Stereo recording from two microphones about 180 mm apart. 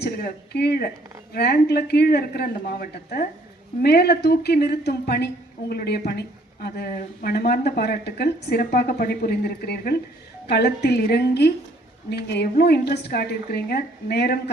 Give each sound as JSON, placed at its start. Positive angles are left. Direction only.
{"t": 0.0, "sound": "a woman's voice", "side_deg": 60}